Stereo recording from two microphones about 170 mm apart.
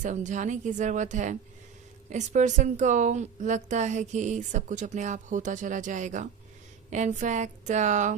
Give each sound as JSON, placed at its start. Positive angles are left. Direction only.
{"t": 0.0, "sound": "a woman's voice", "side_deg": -45}